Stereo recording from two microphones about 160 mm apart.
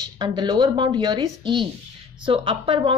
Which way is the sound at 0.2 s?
25° right (ahead or behind).